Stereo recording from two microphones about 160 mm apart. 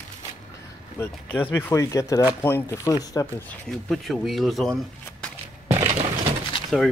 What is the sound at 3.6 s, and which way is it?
Speech, centre (ahead or behind).